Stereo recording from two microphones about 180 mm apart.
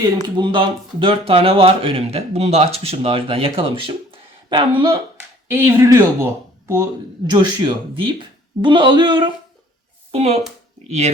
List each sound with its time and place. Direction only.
0.0 s speech: 25° right (ahead or behind)
5.5 s speech: 15° right (ahead or behind)
7.3 s speech: 25° right (ahead or behind)